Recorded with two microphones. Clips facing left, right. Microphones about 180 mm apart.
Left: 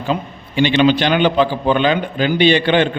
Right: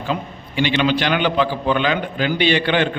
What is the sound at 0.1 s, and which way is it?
A man's voice, 25° left (ahead or behind).